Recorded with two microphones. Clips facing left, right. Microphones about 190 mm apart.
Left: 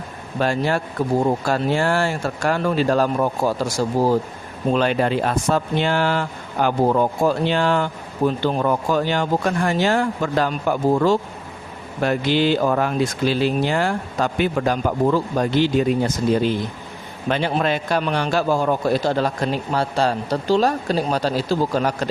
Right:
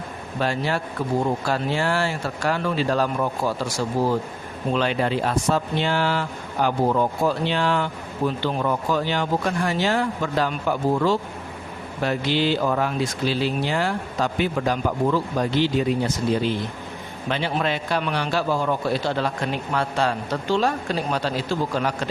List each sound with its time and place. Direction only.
0.3 s a man's voice: 45° left (ahead or behind)